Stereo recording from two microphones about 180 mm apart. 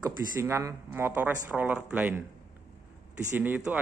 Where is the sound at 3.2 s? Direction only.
10° right (ahead or behind).